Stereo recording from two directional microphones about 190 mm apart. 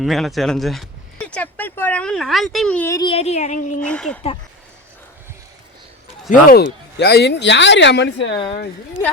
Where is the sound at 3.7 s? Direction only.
5° left (ahead or behind).